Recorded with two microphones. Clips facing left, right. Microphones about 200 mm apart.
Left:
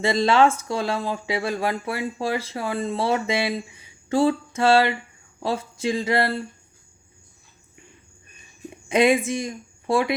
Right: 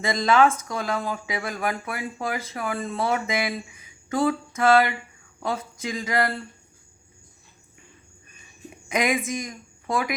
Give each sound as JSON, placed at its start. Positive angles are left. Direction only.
{"t": 0.0, "sound": "speech", "side_deg": 30}
{"t": 8.9, "sound": "a woman's voice", "side_deg": 30}